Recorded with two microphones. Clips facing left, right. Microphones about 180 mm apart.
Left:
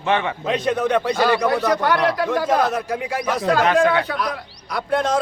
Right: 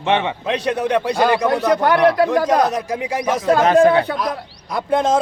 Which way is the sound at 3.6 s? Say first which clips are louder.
Right 6 dB; 40° right (ahead or behind).